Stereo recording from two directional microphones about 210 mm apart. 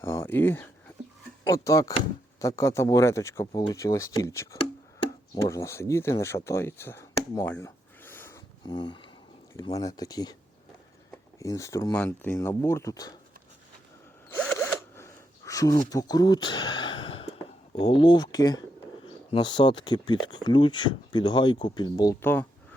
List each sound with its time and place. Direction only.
0.0 s speech: 10° left (ahead or behind)
14.3 s zipper: 5° left (ahead or behind); by 17.2 s 25° left (ahead or behind)
17.7 s speech: 25° left (ahead or behind)